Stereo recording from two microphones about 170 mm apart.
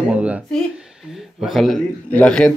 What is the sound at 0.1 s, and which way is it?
Speech, 5° right (ahead or behind).